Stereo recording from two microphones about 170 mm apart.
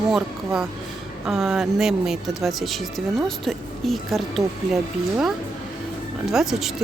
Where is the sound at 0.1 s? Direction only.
5° right (ahead or behind).